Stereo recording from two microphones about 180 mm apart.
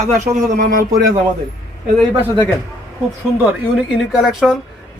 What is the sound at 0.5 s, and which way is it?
Speech, 50° right (ahead or behind).